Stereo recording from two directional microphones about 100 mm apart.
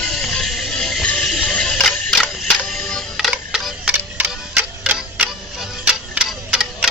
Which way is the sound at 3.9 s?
15° right (ahead or behind).